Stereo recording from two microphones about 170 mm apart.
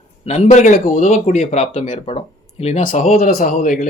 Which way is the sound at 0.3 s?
45° left (ahead or behind).